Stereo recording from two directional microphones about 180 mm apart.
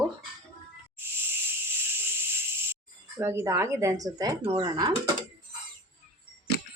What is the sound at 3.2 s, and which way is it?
Speech, 15° right (ahead or behind).